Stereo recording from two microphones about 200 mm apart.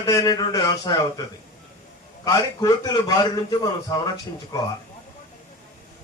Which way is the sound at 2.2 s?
15° left (ahead or behind).